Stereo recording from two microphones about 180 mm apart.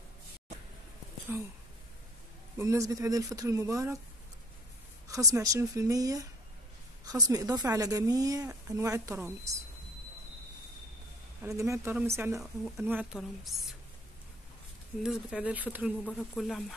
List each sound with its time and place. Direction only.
1.3 s speech: 15° right (ahead or behind)
2.5 s speech: 15° right (ahead or behind)
5.0 s a woman's voice: 20° right (ahead or behind)
11.4 s speech: 15° right (ahead or behind)
12.4 s speech: centre (ahead or behind)
15.0 s speech: 5° right (ahead or behind)